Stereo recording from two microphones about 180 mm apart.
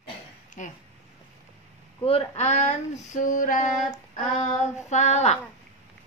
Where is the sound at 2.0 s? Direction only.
35° left (ahead or behind).